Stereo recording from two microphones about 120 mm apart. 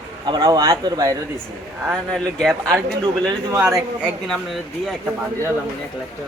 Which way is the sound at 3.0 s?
35° right (ahead or behind).